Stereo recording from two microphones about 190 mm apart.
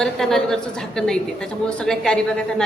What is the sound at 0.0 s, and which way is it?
A woman's voice, centre (ahead or behind).